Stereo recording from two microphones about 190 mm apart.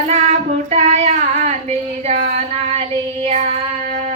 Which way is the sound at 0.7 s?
35° right (ahead or behind).